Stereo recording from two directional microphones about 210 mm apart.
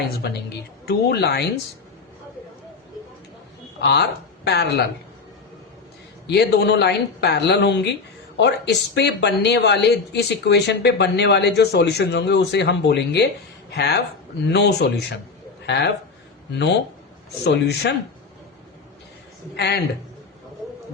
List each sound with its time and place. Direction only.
0.2 s speech: 50° left (ahead or behind)
3.8 s speech: 50° left (ahead or behind)
6.2 s a man's voice: 50° left (ahead or behind)
17.4 s speech: 55° left (ahead or behind)
19.5 s speech: 50° left (ahead or behind)